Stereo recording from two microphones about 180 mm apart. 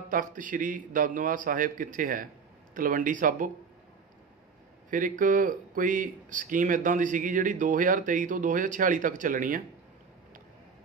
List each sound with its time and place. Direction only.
0.1 s speech: 50° right (ahead or behind)
5.2 s speech: 45° right (ahead or behind)